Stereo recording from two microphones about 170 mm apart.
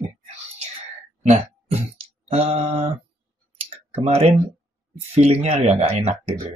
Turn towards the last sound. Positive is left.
turn(degrees=-40)  # may be behind; listen again after turning